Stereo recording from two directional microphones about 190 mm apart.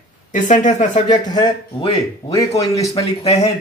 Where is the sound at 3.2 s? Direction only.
30° left (ahead or behind).